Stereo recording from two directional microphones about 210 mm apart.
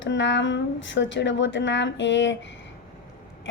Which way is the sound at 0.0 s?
60° left (ahead or behind).